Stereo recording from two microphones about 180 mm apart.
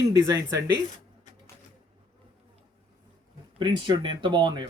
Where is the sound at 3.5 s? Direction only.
25° right (ahead or behind).